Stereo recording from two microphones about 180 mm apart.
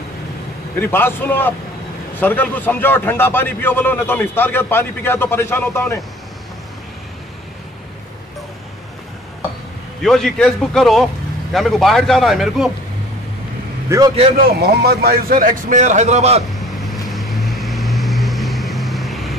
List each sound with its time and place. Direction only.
0.7 s a man's voice: 10° left (ahead or behind)
10.0 s speech: centre (ahead or behind)
13.8 s a man's voice: 20° right (ahead or behind)
14.4 s a man's voice: 60° right (ahead or behind); by 16.4 s 35° right (ahead or behind)
17.1 s vehicle: centre (ahead or behind)